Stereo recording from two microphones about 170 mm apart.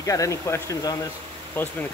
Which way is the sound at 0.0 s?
20° left (ahead or behind).